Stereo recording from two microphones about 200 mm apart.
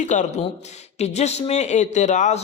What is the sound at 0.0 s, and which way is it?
A man's voice, 35° left (ahead or behind).